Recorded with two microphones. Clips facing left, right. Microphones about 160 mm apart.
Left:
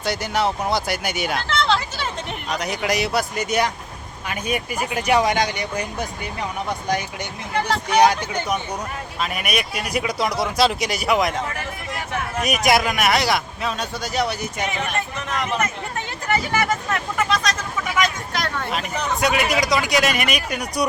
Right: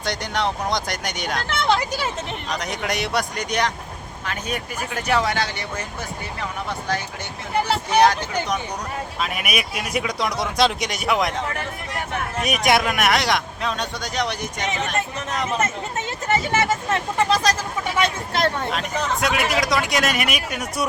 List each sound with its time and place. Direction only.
0.0 s a man's voice: 5° left (ahead or behind)
1.5 s a sound: 15° right (ahead or behind)
2.5 s a man's voice: centre (ahead or behind)
9.2 s a man's voice: centre (ahead or behind)
12.4 s a man's voice: centre (ahead or behind)
15.3 s speech: 25° right (ahead or behind)
18.7 s a man's voice: centre (ahead or behind)